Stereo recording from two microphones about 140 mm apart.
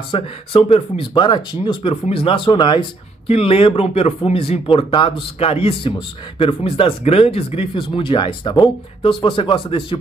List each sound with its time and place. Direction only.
0.1 s speech: 40° left (ahead or behind)